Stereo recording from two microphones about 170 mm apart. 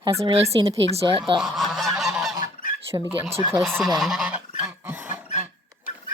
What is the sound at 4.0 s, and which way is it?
Goose, centre (ahead or behind).